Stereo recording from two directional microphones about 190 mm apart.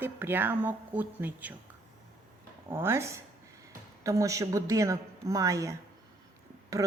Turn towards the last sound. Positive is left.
turn(degrees=-20)  # may be behind; listen again after turning